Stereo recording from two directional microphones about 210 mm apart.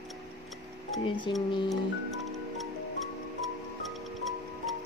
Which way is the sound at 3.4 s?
Centre (ahead or behind).